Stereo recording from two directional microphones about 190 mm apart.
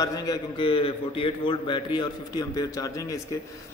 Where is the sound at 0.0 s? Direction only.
20° left (ahead or behind).